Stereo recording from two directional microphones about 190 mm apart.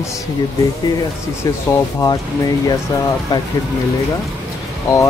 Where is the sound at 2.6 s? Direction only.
20° left (ahead or behind).